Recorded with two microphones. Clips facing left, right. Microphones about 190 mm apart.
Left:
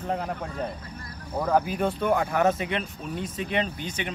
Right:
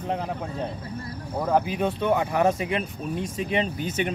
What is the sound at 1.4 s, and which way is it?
Speech, 5° right (ahead or behind).